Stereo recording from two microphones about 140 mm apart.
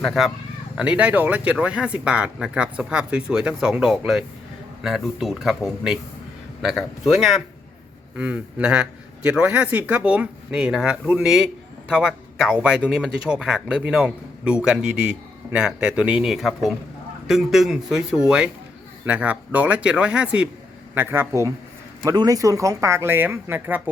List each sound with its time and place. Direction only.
0.0 s speech: centre (ahead or behind)